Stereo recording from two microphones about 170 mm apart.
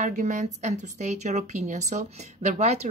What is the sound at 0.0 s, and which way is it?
Speech, 50° right (ahead or behind).